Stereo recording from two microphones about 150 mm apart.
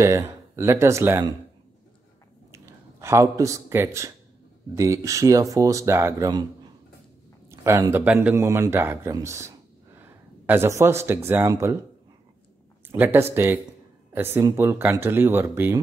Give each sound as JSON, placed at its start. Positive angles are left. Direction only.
{"t": 0.0, "sound": "speech", "side_deg": -15}
{"t": 2.5, "sound": "speech", "side_deg": -20}
{"t": 12.8, "sound": "speech", "side_deg": -15}